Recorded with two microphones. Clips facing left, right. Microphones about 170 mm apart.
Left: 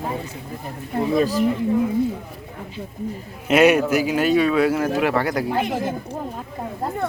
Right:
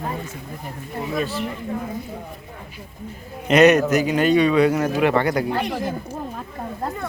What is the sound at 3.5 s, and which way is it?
A man's voice, 10° left (ahead or behind).